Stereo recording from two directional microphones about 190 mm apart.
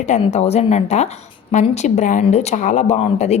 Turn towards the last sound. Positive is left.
turn(degrees=35)  # may be behind; listen again after turning